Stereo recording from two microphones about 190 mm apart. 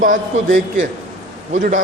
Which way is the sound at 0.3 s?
35° right (ahead or behind).